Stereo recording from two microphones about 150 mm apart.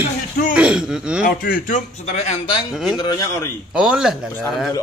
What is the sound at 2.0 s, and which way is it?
Speech, 50° left (ahead or behind).